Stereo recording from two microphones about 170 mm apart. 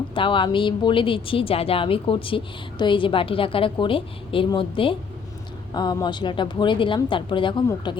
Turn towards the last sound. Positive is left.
turn(degrees=25)  # may be behind; listen again after turning